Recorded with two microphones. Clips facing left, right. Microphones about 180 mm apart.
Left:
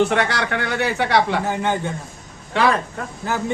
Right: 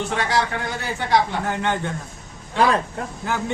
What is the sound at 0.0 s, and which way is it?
Speech, 65° left (ahead or behind).